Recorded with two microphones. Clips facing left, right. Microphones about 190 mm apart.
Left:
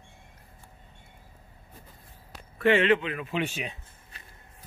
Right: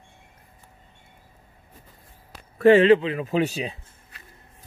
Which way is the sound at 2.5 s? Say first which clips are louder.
Right 8 dB; 40° right (ahead or behind).